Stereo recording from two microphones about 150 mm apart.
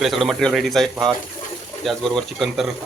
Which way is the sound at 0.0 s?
Centre (ahead or behind).